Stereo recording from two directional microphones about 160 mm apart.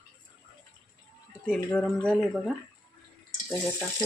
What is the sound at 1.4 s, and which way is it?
Speech, 5° left (ahead or behind).